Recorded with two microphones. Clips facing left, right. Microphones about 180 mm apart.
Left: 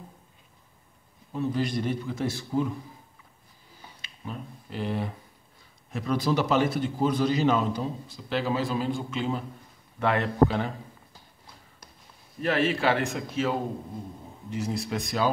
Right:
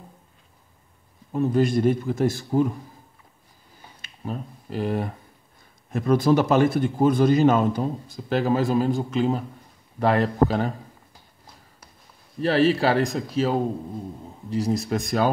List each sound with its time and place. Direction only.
1.3 s a man's voice: 50° right (ahead or behind)
4.0 s a man's voice: 45° right (ahead or behind)
12.4 s a man's voice: 35° right (ahead or behind)